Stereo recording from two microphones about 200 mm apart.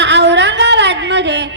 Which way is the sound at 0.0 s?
60° right (ahead or behind).